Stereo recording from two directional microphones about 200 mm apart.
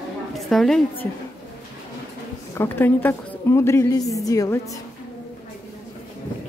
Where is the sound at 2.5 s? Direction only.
10° left (ahead or behind).